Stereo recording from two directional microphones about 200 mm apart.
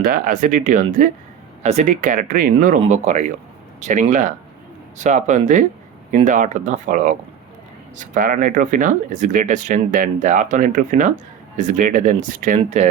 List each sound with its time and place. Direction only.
0.0 s speech: 45° right (ahead or behind)